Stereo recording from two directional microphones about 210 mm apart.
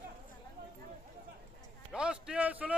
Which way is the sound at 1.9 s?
5° right (ahead or behind).